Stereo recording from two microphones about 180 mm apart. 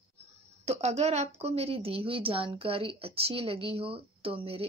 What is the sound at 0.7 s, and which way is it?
A woman's voice, 35° right (ahead or behind).